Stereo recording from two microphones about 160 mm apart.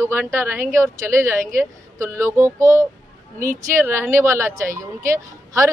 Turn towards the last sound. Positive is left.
turn(degrees=-20)  # may be behind; listen again after turning